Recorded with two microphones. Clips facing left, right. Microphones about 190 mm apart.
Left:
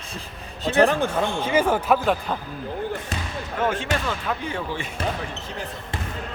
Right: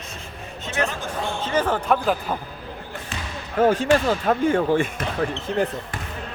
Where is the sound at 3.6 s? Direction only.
40° right (ahead or behind); by 5.6 s 55° right (ahead or behind).